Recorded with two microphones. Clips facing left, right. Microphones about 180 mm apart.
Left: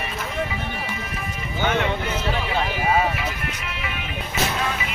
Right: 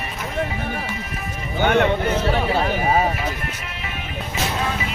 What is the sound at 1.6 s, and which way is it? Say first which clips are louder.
Speech: right 5 dB; 55° right (ahead or behind).